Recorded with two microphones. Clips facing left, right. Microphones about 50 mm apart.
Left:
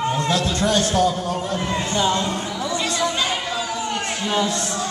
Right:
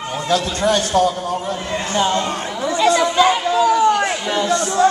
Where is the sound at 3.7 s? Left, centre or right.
Right.